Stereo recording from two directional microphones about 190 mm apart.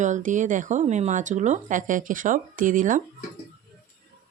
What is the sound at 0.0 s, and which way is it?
Speech, 40° right (ahead or behind).